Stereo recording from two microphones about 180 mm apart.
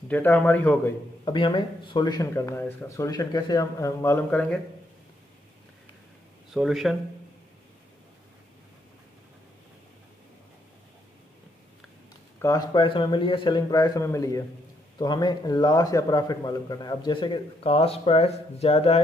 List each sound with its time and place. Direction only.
0.1 s speech: 10° left (ahead or behind)
1.2 s speech: 25° left (ahead or behind); by 4.6 s 5° left (ahead or behind)
6.5 s speech: centre (ahead or behind)
12.4 s speech: 20° left (ahead or behind); by 18.9 s 35° left (ahead or behind)